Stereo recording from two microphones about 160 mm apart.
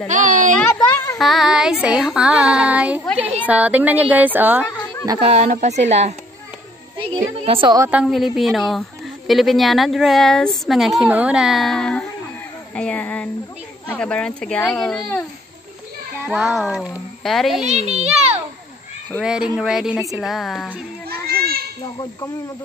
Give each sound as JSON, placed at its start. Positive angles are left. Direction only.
{"t": 0.1, "sound": "speech", "side_deg": -50}
{"t": 0.6, "sound": "speech", "side_deg": 10}
{"t": 1.2, "sound": "speech", "side_deg": 0}
{"t": 5.2, "sound": "speech", "side_deg": -40}
{"t": 7.4, "sound": "a woman's voice", "side_deg": -30}
{"t": 7.8, "sound": "speech", "side_deg": -5}
{"t": 16.3, "sound": "speech", "side_deg": 0}
{"t": 17.6, "sound": "a child's voice", "side_deg": -45}
{"t": 19.2, "sound": "speech", "side_deg": -5}
{"t": 21.1, "sound": "children playing", "side_deg": -70}